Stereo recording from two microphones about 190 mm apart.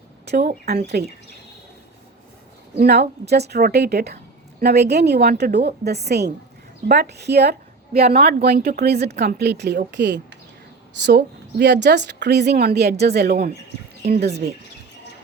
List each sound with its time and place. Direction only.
0.3 s a woman's voice: 60° right (ahead or behind)
2.7 s a woman's voice: 55° right (ahead or behind)